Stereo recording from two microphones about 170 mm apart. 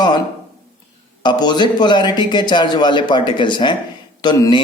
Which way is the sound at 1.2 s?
25° left (ahead or behind).